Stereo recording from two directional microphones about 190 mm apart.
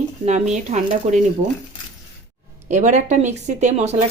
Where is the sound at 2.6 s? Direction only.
40° right (ahead or behind).